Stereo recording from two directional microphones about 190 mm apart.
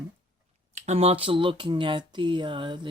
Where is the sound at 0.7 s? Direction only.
35° right (ahead or behind).